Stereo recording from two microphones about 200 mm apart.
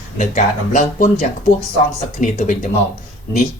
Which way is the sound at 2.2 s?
40° left (ahead or behind).